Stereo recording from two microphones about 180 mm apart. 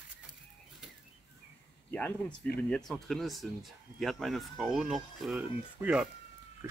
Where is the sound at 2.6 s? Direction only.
5° left (ahead or behind).